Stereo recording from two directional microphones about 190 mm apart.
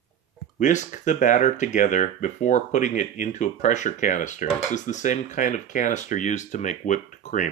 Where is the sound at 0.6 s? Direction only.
40° left (ahead or behind).